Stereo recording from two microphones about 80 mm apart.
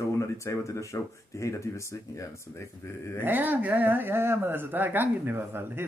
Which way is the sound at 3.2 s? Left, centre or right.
Right.